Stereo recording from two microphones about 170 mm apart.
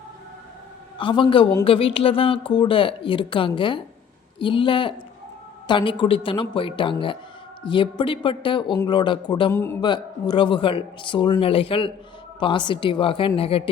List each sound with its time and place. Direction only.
0.9 s a woman's voice: 30° left (ahead or behind)
9.5 s a man's voice: 15° left (ahead or behind)
9.8 s a woman's voice: 25° left (ahead or behind)